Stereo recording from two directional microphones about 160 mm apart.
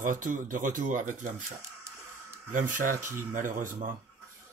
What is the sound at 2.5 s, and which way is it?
Speech, 55° right (ahead or behind).